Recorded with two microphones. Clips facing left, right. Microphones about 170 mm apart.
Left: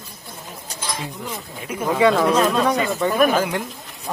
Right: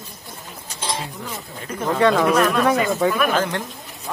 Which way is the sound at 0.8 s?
30° right (ahead or behind).